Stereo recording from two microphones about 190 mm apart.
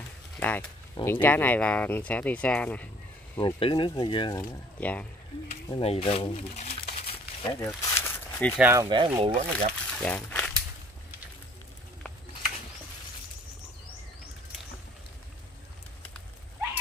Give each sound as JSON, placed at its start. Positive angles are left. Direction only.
{"t": 0.4, "sound": "speech", "side_deg": 10}
{"t": 3.3, "sound": "speech", "side_deg": 25}
{"t": 4.7, "sound": "speech", "side_deg": 10}
{"t": 5.7, "sound": "speech", "side_deg": 30}
{"t": 7.6, "sound": "a sound", "side_deg": 10}
{"t": 8.5, "sound": "speech", "side_deg": -10}
{"t": 8.8, "sound": "speech", "side_deg": -25}
{"t": 9.3, "sound": "speech", "side_deg": -40}
{"t": 9.9, "sound": "speech", "side_deg": 5}